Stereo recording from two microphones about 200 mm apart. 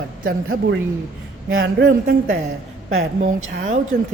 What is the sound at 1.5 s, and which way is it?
Speech, 75° right (ahead or behind).